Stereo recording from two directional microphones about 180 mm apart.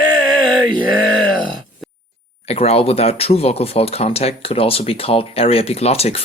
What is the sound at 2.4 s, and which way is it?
Speech, 35° left (ahead or behind).